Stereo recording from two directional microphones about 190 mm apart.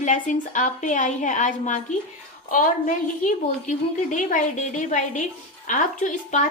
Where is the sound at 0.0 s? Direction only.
40° left (ahead or behind).